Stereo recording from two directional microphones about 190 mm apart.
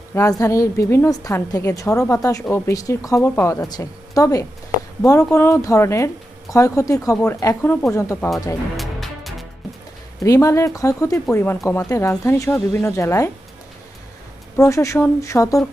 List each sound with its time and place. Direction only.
0.1 s a woman's voice: 15° left (ahead or behind)
8.7 s music: centre (ahead or behind)
10.2 s a woman's voice: 15° left (ahead or behind)
14.5 s a woman's voice: 15° left (ahead or behind)